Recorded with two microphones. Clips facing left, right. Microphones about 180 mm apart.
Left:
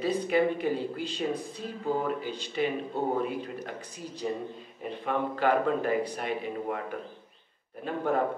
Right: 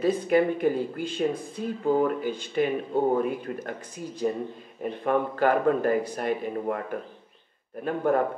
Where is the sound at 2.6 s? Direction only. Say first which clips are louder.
Right 4 dB; 50° right (ahead or behind).